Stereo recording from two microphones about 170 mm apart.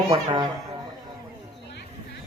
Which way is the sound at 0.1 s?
25° right (ahead or behind).